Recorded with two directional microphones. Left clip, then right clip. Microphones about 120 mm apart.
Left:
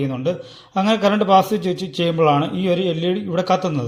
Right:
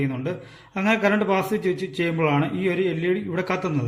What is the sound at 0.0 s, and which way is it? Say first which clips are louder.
A man's voice: left 6 dB; 30° left (ahead or behind).